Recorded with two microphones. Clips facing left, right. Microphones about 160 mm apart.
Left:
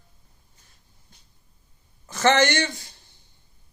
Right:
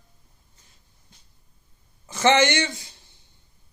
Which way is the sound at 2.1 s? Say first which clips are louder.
Right 1 dB; 20° right (ahead or behind).